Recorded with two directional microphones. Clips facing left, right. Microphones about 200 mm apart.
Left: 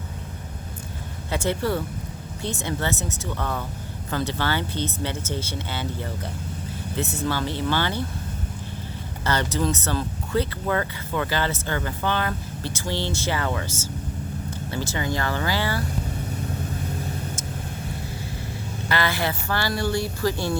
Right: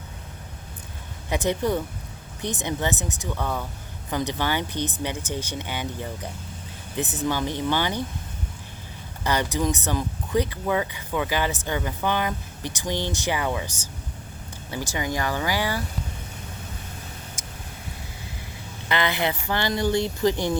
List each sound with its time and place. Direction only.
1.3 s speech: 15° right (ahead or behind)
9.2 s speech: 15° right (ahead or behind)
18.9 s speech: 20° right (ahead or behind)